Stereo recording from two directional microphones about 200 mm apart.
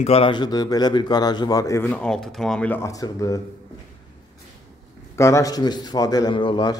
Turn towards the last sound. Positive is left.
turn(degrees=20)  # may be behind; listen again after turning